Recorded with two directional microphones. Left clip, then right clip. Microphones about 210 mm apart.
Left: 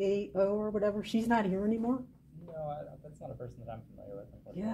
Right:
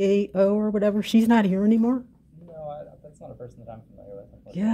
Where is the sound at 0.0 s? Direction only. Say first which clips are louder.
Right 9 dB; 50° right (ahead or behind).